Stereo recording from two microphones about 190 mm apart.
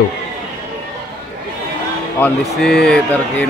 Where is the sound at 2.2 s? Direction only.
5° left (ahead or behind).